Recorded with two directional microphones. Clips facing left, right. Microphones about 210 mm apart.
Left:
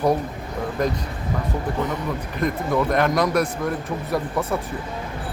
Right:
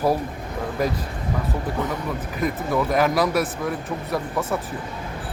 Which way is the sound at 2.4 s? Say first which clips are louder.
Left 1 dB; 5° right (ahead or behind).